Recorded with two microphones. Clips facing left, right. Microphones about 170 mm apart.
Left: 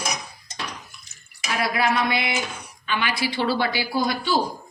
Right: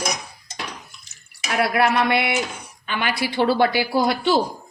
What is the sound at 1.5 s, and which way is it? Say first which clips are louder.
A woman's voice: right 4 dB; 60° right (ahead or behind).